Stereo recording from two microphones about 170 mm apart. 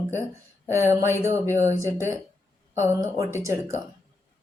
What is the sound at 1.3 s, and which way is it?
Speech, 15° right (ahead or behind).